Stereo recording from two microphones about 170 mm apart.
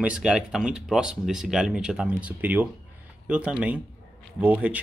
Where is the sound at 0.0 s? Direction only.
5° right (ahead or behind).